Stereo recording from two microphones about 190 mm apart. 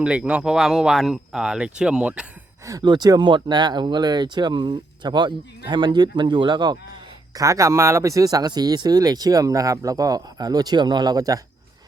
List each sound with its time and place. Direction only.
0.0 s speech: 5° right (ahead or behind)
2.6 s speech: 20° right (ahead or behind)